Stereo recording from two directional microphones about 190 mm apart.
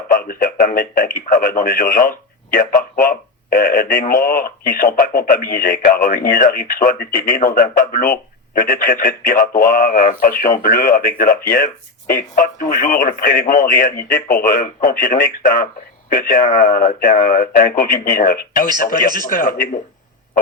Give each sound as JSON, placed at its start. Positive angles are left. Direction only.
{"t": 0.1, "sound": "speech", "side_deg": 50}